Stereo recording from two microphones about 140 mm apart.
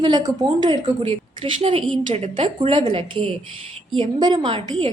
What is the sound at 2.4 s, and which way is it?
A woman's voice, 35° right (ahead or behind).